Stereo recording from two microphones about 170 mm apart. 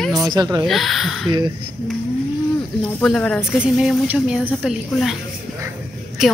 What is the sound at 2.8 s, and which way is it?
A woman's voice, 5° left (ahead or behind).